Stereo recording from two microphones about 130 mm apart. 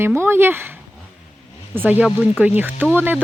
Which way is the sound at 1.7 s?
15° right (ahead or behind).